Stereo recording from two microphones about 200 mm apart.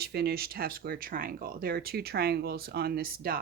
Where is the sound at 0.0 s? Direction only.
55° right (ahead or behind).